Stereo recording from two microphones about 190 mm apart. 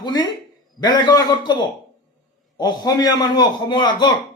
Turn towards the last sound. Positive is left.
turn(degrees=20)  # may be behind; listen again after turning